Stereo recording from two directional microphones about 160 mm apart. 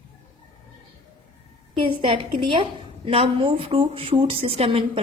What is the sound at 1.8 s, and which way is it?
A woman's voice, 35° right (ahead or behind).